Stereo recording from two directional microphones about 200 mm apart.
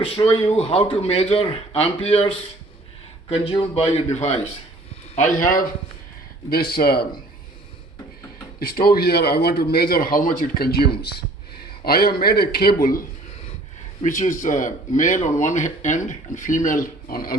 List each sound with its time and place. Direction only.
0.0 s speech: 30° left (ahead or behind); by 7.1 s 50° left (ahead or behind)
8.5 s speech: 50° left (ahead or behind)